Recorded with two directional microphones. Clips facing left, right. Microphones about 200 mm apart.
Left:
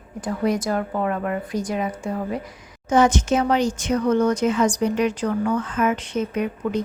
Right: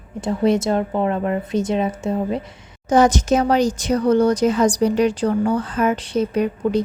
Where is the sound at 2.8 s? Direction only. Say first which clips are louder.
Right 3 dB; 35° right (ahead or behind).